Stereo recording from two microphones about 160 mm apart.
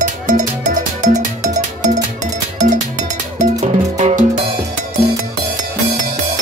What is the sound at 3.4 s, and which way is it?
Music, 45° right (ahead or behind).